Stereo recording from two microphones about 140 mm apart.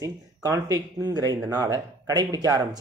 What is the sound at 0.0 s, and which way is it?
Speech, 25° right (ahead or behind).